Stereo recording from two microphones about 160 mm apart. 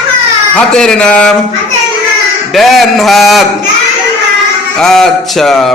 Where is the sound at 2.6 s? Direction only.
Centre (ahead or behind).